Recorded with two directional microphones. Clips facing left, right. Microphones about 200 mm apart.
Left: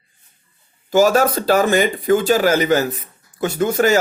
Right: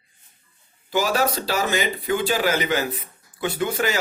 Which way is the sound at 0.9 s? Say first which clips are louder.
Left 8 dB; 45° left (ahead or behind).